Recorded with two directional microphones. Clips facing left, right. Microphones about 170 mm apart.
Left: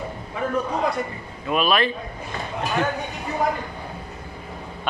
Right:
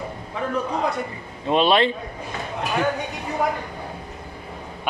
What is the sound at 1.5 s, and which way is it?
Speech, 25° right (ahead or behind).